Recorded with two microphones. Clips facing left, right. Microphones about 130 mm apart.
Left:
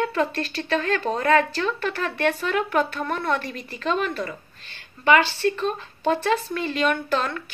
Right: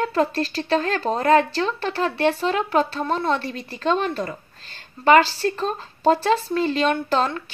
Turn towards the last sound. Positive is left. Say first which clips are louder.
# right 3 dB
turn(degrees=-30)  # may be behind; listen again after turning